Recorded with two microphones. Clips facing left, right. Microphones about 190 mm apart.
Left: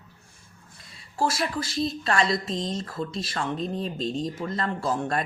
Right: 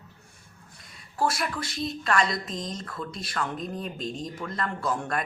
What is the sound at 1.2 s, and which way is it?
A woman's voice, 25° left (ahead or behind).